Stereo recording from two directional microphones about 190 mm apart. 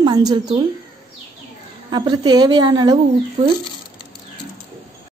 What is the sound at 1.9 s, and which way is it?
A woman's voice, 20° right (ahead or behind).